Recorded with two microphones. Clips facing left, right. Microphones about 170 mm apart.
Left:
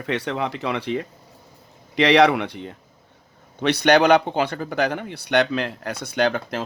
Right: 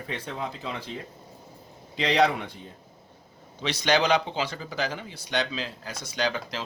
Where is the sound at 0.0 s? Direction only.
80° left.